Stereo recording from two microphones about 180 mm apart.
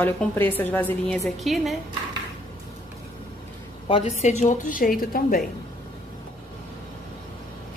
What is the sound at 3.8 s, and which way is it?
A woman's voice, 30° left (ahead or behind).